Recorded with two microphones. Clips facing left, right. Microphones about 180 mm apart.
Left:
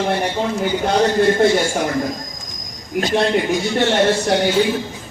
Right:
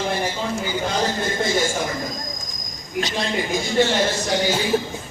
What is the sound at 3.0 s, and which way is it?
A man's voice, 55° left (ahead or behind).